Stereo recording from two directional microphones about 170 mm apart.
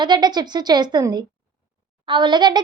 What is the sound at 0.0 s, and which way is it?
Speech, 25° right (ahead or behind).